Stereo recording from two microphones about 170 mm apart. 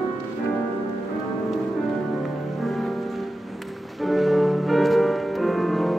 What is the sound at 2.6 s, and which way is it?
Music, centre (ahead or behind).